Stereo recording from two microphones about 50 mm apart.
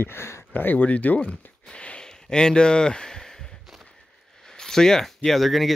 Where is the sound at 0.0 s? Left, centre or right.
Left.